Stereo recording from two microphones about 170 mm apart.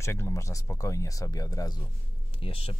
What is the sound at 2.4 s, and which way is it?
Speech, 35° left (ahead or behind).